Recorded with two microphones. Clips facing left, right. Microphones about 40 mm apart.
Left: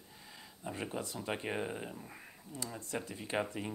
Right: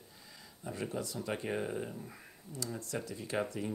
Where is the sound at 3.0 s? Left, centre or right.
Left.